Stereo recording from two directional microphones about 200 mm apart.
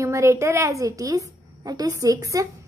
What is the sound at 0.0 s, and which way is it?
A woman's voice, 15° right (ahead or behind).